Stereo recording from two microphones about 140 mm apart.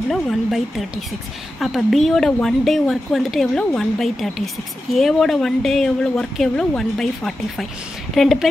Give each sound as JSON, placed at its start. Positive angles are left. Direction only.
{"t": 0.1, "sound": "speech", "side_deg": 0}